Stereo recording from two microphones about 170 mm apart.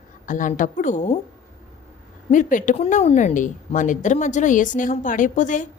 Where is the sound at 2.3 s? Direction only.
50° left (ahead or behind).